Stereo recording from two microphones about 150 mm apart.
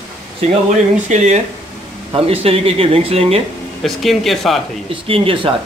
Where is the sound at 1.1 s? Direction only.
50° right (ahead or behind).